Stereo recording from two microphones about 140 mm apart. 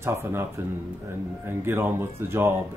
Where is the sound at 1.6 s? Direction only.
15° right (ahead or behind).